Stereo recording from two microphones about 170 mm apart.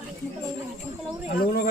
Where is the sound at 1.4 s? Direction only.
65° left (ahead or behind).